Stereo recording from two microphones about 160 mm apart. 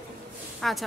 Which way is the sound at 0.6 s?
Centre (ahead or behind).